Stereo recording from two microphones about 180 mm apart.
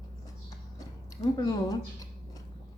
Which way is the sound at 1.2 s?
20° left (ahead or behind).